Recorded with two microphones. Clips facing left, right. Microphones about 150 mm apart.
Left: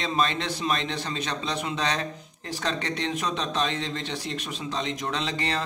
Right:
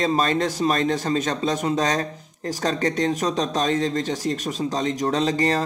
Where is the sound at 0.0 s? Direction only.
40° right (ahead or behind).